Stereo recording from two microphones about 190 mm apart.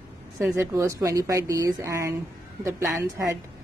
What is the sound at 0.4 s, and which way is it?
A woman's voice, 15° right (ahead or behind).